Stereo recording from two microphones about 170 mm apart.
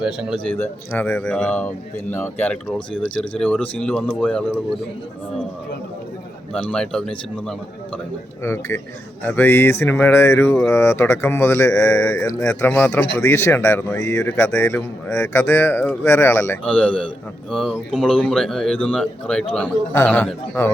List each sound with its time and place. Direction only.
0.0 s a man's voice: 5° right (ahead or behind)
0.4 s a man's voice: 10° left (ahead or behind)
6.5 s a man's voice: 5° left (ahead or behind)
8.4 s speech: 15° left (ahead or behind)
11.8 s a man's voice: 5° left (ahead or behind)